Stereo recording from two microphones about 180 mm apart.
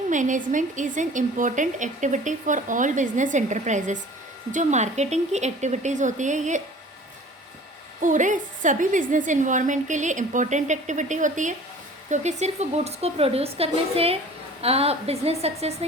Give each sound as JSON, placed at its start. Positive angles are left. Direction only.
{"t": 0.1, "sound": "a woman's voice", "side_deg": -45}
{"t": 8.0, "sound": "a woman's voice", "side_deg": -45}